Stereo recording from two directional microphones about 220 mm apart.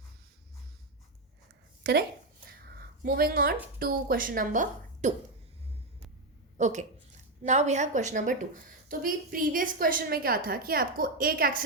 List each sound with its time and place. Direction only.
1.8 s a woman's voice: 45° right (ahead or behind)
6.6 s a woman's voice: 30° right (ahead or behind)